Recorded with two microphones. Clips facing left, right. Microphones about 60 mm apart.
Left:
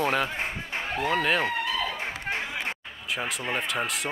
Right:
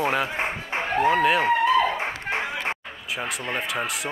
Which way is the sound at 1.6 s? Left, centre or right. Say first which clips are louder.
Right 9 dB; right.